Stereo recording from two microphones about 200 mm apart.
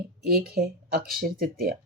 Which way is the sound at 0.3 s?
50° right (ahead or behind).